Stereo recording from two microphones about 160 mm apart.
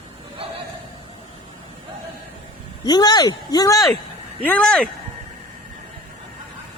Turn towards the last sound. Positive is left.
turn(degrees=5)  # may be behind; listen again after turning